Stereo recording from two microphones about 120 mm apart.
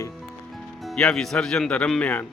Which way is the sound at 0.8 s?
5° left (ahead or behind).